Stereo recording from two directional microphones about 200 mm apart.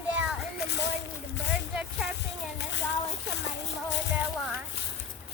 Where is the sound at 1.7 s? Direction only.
5° right (ahead or behind).